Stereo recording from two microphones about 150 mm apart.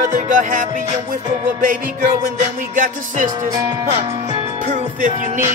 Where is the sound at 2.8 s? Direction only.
65° right (ahead or behind).